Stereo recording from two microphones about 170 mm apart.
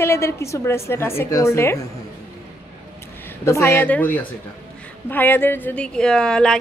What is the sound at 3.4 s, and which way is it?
A woman's voice, 15° left (ahead or behind).